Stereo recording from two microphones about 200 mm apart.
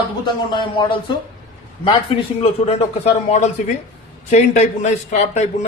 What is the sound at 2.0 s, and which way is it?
Speech, 30° left (ahead or behind).